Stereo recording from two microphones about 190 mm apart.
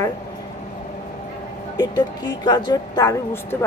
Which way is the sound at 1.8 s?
20° left (ahead or behind).